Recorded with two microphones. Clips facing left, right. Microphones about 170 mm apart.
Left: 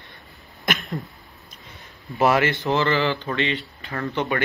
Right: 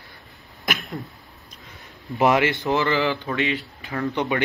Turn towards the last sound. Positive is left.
turn(degrees=-15)  # may be behind; listen again after turning